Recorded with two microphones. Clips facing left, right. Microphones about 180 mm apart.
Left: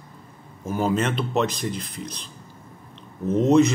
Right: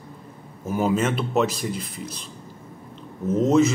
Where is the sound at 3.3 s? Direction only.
Centre (ahead or behind).